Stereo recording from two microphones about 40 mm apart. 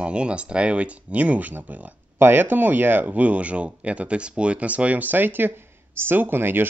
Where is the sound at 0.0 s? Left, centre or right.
Right.